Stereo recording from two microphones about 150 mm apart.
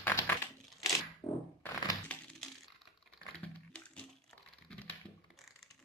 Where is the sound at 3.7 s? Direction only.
5° left (ahead or behind).